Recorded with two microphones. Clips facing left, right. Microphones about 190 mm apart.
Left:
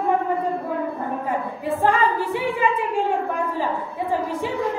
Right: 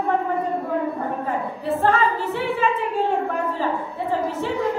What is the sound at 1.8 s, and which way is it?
A capella, 15° left (ahead or behind).